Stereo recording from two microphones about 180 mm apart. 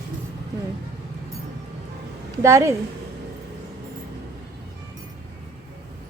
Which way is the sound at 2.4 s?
15° right (ahead or behind).